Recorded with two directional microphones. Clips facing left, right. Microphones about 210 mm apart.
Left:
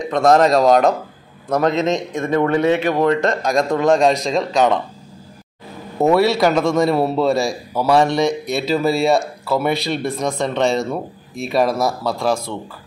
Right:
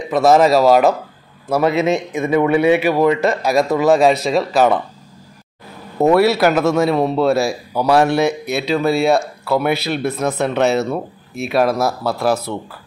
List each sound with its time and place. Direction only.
0.0 s a man's voice: 5° right (ahead or behind)
5.9 s speech: centre (ahead or behind)